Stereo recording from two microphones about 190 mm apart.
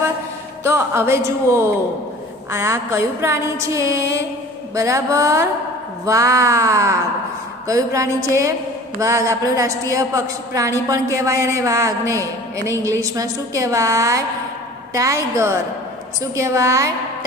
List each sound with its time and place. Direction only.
0.7 s a woman's voice: 15° right (ahead or behind)